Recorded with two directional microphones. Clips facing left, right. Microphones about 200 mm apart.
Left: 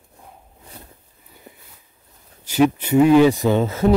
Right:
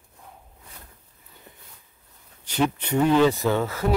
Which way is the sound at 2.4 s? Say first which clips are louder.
Left 7 dB; 10° left (ahead or behind).